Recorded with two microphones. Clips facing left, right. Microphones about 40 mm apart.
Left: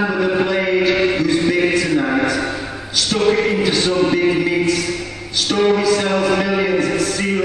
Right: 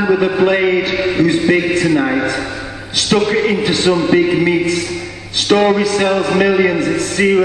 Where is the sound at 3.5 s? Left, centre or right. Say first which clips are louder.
Right 3 dB; right.